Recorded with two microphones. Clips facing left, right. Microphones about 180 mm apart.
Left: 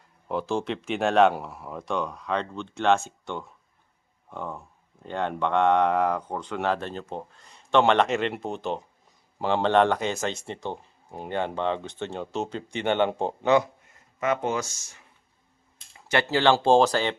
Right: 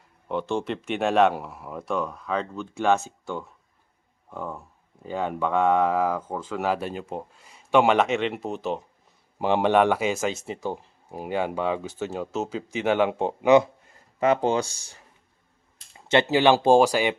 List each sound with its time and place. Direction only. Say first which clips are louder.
0.3 s speech: right 1 dB; centre (ahead or behind)
9.4 s speech: right 1 dB; 15° right (ahead or behind)
13.5 s speech: right 5 dB; 30° right (ahead or behind)
16.0 s speech: right 3 dB; 20° right (ahead or behind)